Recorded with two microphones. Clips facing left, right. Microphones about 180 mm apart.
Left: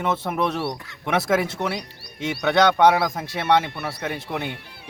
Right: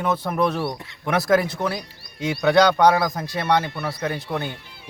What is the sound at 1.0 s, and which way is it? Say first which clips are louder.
A man's voice: right 2 dB; 5° left (ahead or behind).